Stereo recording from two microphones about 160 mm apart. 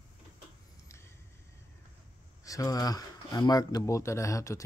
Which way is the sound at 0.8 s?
15° left (ahead or behind).